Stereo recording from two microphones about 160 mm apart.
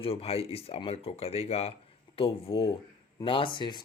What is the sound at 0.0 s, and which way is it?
Speech, 35° left (ahead or behind).